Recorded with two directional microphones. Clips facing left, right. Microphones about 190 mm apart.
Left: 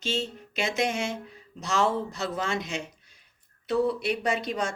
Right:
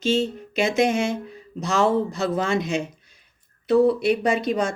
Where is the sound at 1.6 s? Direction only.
45° right (ahead or behind).